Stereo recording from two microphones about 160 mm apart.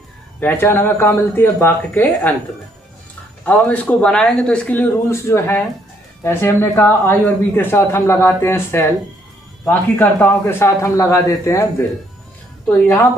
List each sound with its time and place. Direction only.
0.4 s speech: 15° left (ahead or behind)
3.4 s speech: 10° left (ahead or behind)